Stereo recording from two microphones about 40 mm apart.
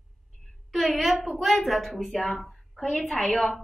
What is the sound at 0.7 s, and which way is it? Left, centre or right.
A woman's voice, centre.